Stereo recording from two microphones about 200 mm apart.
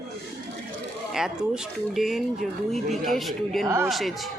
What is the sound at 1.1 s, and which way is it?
Speech, centre (ahead or behind).